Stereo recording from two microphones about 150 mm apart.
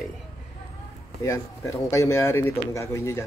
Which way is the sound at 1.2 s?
20° left (ahead or behind).